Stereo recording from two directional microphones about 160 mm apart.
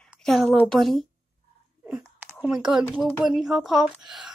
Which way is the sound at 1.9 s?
10° right (ahead or behind).